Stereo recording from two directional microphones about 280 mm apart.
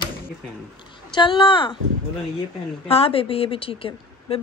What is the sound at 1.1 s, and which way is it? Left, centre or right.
Speech, centre.